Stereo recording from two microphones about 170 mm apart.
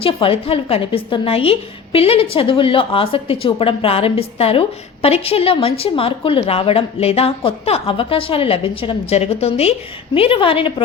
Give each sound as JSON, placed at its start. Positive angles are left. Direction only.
{"t": 0.0, "sound": "a woman's voice", "side_deg": 35}